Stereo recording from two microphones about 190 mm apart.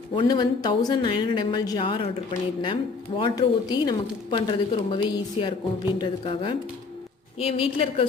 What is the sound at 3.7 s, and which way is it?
A woman's voice, 25° left (ahead or behind).